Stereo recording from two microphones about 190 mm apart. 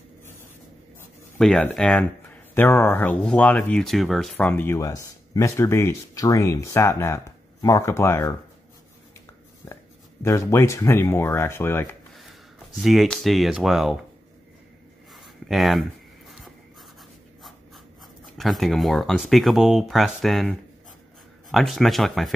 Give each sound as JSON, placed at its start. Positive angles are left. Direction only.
{"t": 1.4, "sound": "speech", "side_deg": 5}
{"t": 9.6, "sound": "a sound", "side_deg": 15}
{"t": 10.2, "sound": "speech", "side_deg": 15}
{"t": 12.2, "sound": "speech", "side_deg": 0}
{"t": 15.1, "sound": "writing", "side_deg": 0}
{"t": 18.4, "sound": "speech", "side_deg": 0}